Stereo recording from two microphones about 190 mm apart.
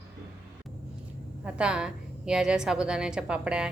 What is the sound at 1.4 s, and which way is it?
A woman's voice, 5° right (ahead or behind).